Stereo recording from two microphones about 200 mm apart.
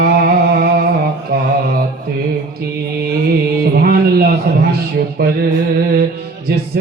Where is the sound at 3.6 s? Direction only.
50° right (ahead or behind).